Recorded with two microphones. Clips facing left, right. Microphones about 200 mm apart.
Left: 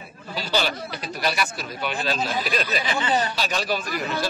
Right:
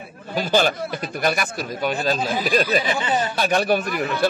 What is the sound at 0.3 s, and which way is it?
Speech, 50° right (ahead or behind).